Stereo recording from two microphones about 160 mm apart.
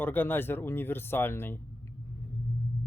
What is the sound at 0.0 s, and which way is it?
Speech, 10° left (ahead or behind).